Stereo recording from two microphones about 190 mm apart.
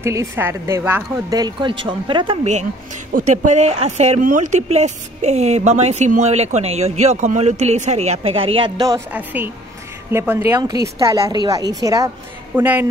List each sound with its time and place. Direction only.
0.0 s speech: 15° right (ahead or behind); by 2.6 s 30° right (ahead or behind)
3.1 s speech: 45° right (ahead or behind); by 9.0 s 20° right (ahead or behind)
9.1 s speech: 10° right (ahead or behind)